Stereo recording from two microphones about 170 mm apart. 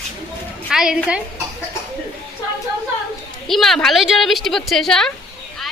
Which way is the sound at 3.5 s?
Centre (ahead or behind).